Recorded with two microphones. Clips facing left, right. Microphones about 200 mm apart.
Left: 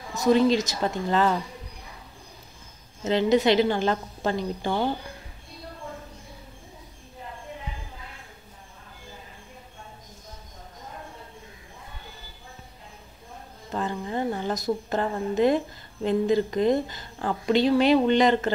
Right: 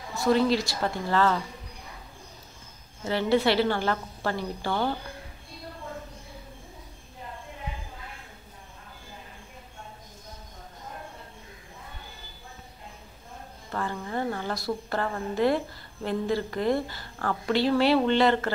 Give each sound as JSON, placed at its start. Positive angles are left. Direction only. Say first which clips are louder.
{"t": 0.1, "sound": "a woman's voice", "louder": "left 3 dB", "side_deg": 20}
{"t": 3.0, "sound": "a woman's voice", "louder": "left 3 dB", "side_deg": 20}
{"t": 13.7, "sound": "a woman's voice", "louder": "left 3 dB", "side_deg": 20}